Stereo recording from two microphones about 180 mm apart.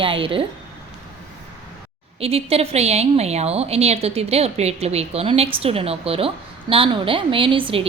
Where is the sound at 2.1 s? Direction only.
35° right (ahead or behind).